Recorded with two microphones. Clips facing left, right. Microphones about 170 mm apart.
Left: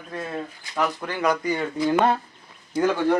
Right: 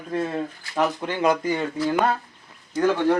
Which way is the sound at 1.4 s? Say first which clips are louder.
Right 1 dB; centre (ahead or behind).